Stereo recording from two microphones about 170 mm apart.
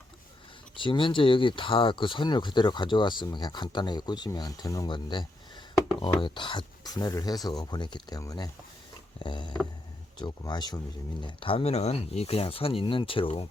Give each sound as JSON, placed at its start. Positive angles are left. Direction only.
{"t": 0.8, "sound": "speech", "side_deg": 30}